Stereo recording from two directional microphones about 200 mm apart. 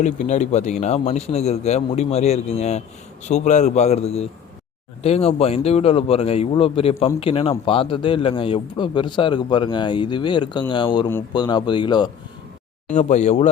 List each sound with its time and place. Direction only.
0.0 s a man's voice: 35° left (ahead or behind); by 12.1 s 20° left (ahead or behind)
12.9 s a man's voice: 35° left (ahead or behind)